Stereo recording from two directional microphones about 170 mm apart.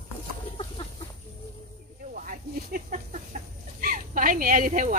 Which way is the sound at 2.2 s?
55° right (ahead or behind).